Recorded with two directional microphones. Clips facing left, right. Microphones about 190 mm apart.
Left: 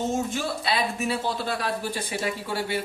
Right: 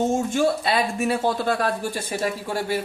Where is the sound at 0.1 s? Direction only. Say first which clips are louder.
Right 6 dB; 50° right (ahead or behind).